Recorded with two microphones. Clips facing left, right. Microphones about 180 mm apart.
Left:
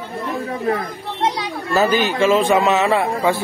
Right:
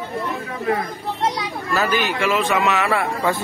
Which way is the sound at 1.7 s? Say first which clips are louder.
Left 4 dB; 30° left (ahead or behind).